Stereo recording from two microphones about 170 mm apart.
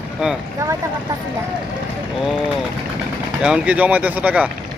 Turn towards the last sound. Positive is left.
turn(degrees=-10)  # may be behind; listen again after turning